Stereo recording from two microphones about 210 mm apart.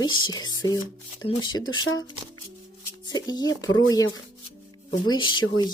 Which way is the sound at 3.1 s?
20° left (ahead or behind).